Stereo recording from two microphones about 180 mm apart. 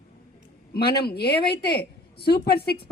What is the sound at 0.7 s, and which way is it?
A woman's voice, 60° left (ahead or behind).